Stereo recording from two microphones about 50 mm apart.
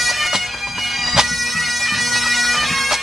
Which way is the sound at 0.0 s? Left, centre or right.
Centre.